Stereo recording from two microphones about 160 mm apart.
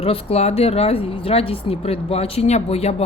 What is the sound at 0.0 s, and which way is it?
A woman's voice, 35° left (ahead or behind).